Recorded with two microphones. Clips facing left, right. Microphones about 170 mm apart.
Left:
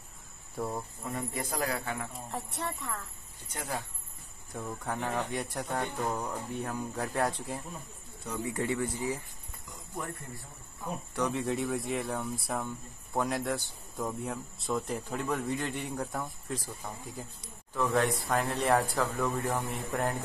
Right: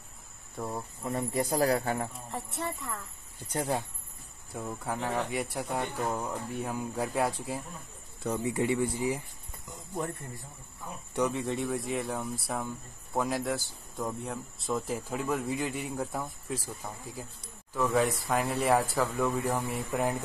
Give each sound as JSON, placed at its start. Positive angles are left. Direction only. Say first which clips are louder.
{"t": 0.6, "sound": "speech", "louder": "left 1 dB", "side_deg": 0}
{"t": 1.1, "sound": "speech", "louder": "right 6 dB", "side_deg": -35}
{"t": 2.1, "sound": "speech", "louder": "right 1 dB", "side_deg": 0}
{"t": 3.5, "sound": "speech", "louder": "right 6 dB", "side_deg": -30}
{"t": 4.6, "sound": "speech", "louder": "right 1 dB", "side_deg": -5}
{"t": 11.3, "sound": "speech", "louder": "even", "side_deg": 0}